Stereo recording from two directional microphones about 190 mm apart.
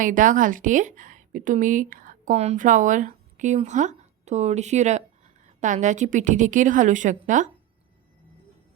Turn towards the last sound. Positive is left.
turn(degrees=-40)  # may be behind; listen again after turning